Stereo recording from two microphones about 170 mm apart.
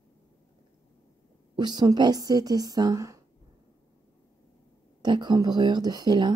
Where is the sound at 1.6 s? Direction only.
25° right (ahead or behind).